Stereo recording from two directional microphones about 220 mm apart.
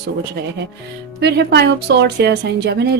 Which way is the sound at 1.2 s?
50° right (ahead or behind).